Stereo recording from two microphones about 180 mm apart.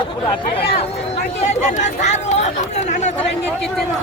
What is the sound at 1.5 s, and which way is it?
Speech, 40° left (ahead or behind).